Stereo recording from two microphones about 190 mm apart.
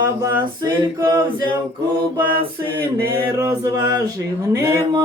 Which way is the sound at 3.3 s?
20° right (ahead or behind).